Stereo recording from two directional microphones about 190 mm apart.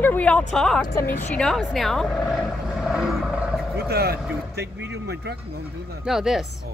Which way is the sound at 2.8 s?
5° right (ahead or behind).